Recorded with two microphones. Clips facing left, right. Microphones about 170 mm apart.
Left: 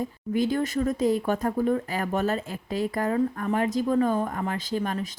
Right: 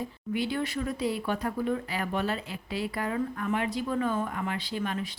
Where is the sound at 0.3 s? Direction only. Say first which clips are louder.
Left 6 dB; 45° left (ahead or behind).